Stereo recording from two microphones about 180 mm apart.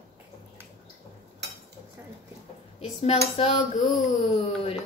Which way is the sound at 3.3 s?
35° left (ahead or behind).